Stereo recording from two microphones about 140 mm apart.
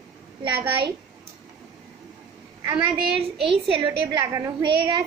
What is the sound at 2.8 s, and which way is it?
A woman's voice, 40° right (ahead or behind).